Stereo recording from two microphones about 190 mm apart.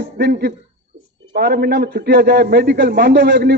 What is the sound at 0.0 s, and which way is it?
A man's voice, 60° right (ahead or behind).